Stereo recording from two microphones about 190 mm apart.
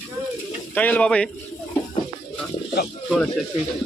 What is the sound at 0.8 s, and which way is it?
Speech, 10° left (ahead or behind).